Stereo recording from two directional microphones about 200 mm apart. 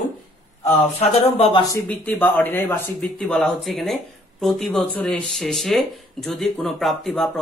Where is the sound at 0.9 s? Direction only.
30° left (ahead or behind).